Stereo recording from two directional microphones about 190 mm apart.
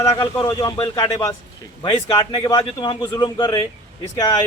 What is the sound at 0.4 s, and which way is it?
A man's voice, 20° left (ahead or behind).